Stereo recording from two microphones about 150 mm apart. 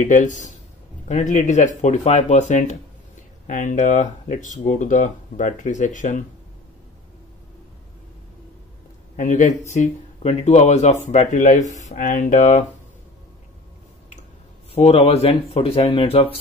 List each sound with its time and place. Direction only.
0.0 s speech: 55° left (ahead or behind)
9.1 s speech: 55° left (ahead or behind)
14.8 s speech: 40° left (ahead or behind)